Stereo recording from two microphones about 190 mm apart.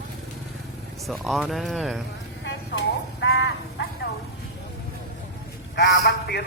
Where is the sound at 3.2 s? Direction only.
70° left (ahead or behind).